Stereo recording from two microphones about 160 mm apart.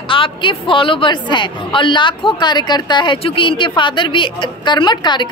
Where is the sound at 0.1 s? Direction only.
30° left (ahead or behind).